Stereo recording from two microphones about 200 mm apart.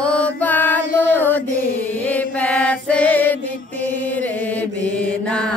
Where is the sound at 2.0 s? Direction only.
5° left (ahead or behind).